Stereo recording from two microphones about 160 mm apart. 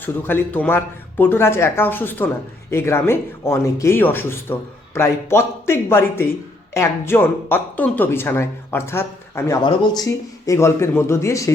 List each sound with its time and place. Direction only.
0.0 s speech: 10° left (ahead or behind)